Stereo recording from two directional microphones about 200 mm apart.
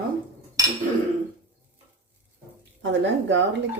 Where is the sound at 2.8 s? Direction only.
65° right (ahead or behind).